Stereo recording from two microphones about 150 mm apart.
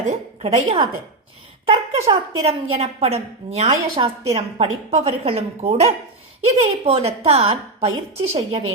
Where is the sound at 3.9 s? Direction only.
35° right (ahead or behind).